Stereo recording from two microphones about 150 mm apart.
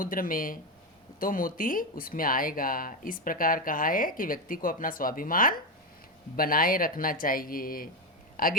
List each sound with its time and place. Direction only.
0.0 s speech: 65° left (ahead or behind)